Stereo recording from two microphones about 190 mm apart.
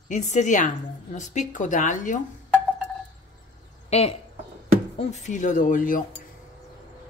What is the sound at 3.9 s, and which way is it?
A woman's voice, 35° left (ahead or behind).